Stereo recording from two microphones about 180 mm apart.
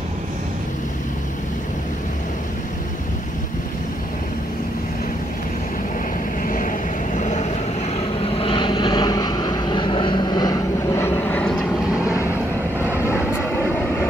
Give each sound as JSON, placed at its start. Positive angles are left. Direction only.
{"t": 6.4, "sound": "vehicle", "side_deg": 50}
{"t": 8.4, "sound": "vehicle", "side_deg": 30}